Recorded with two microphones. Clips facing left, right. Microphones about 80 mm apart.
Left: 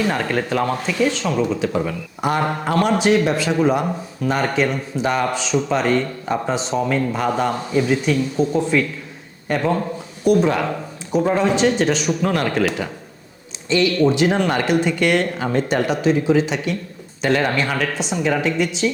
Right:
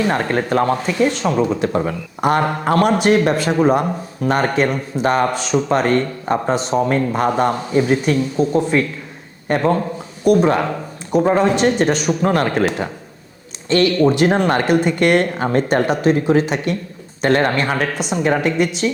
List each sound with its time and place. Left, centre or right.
0.1 s speech: right
9.6 s speech: right
13.7 s speech: right